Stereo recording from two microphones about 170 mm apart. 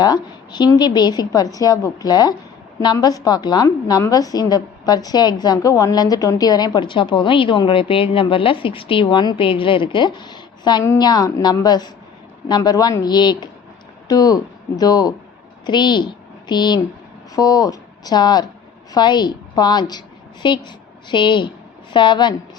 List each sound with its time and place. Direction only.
0.0 s a woman's voice: 25° left (ahead or behind)